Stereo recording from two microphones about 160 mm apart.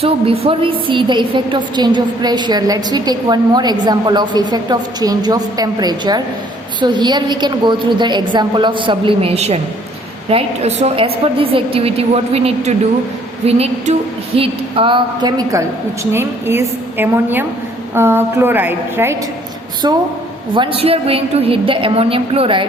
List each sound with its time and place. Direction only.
0.0 s a woman's voice: 35° right (ahead or behind)
16.1 s a woman's voice: 15° right (ahead or behind)
19.8 s a woman's voice: 25° right (ahead or behind)